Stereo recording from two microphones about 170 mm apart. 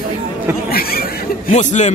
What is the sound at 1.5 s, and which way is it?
Speech, 45° left (ahead or behind).